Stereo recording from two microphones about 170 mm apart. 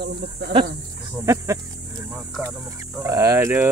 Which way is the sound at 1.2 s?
20° right (ahead or behind).